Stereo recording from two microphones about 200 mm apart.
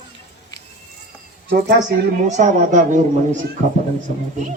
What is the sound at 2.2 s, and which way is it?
Speech, 35° right (ahead or behind).